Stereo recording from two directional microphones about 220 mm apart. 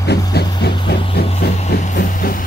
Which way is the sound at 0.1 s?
45° left (ahead or behind).